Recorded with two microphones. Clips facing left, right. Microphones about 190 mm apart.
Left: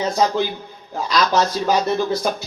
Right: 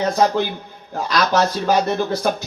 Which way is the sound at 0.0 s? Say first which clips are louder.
Right 1 dB; 55° right (ahead or behind).